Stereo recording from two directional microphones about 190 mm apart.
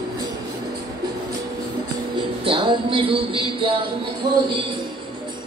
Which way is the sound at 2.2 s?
25° right (ahead or behind).